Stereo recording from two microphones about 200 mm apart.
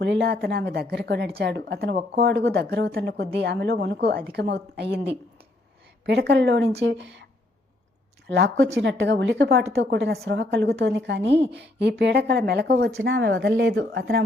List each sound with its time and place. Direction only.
0.0 s a woman's voice: 60° right (ahead or behind)
6.1 s a woman's voice: 60° right (ahead or behind)
8.3 s a woman's voice: 60° right (ahead or behind)